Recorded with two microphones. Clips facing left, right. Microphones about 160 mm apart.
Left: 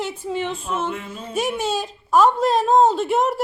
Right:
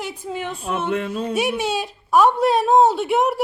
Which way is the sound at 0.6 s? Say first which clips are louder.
Right 3 dB; 60° right (ahead or behind).